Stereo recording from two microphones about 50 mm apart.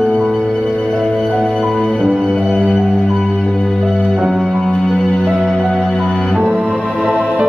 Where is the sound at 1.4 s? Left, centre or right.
Centre.